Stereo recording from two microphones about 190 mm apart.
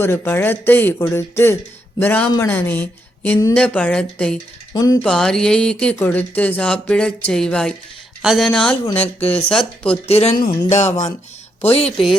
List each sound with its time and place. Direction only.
0.0 s speech: 10° left (ahead or behind)
4.7 s speech: 20° left (ahead or behind)
5.0 s speech: 5° left (ahead or behind)
10.1 s speech: 35° left (ahead or behind)
10.4 s speech: 20° left (ahead or behind)
10.7 s speech: 35° left (ahead or behind)